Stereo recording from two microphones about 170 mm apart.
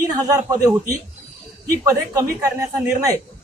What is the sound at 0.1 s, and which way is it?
Speech, 20° right (ahead or behind).